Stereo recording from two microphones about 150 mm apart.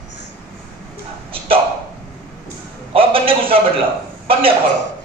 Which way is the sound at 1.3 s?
35° right (ahead or behind).